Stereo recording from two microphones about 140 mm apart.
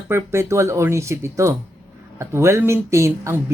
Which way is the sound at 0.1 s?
20° right (ahead or behind).